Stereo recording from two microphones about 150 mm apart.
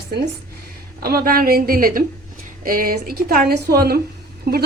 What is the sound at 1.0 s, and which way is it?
A woman's voice, 85° right.